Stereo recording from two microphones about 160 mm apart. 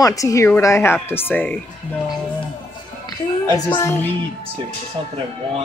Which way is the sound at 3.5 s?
25° left (ahead or behind).